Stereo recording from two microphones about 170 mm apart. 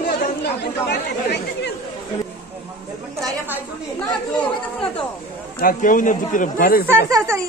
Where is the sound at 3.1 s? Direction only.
15° right (ahead or behind).